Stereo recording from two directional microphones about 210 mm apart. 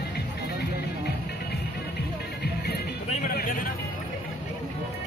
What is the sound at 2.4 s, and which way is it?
Music, 50° left (ahead or behind).